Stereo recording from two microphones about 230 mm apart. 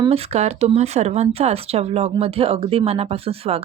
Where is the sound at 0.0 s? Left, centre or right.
Right.